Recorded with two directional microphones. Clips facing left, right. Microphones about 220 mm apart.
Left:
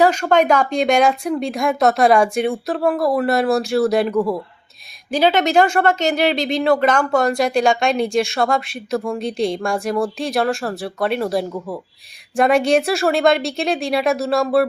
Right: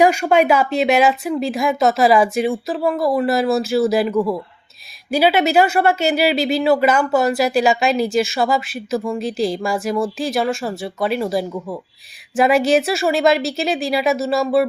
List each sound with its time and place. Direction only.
0.0 s speech: 10° right (ahead or behind)